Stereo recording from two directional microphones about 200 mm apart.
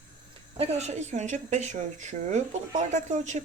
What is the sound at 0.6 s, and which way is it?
Speech, 35° right (ahead or behind).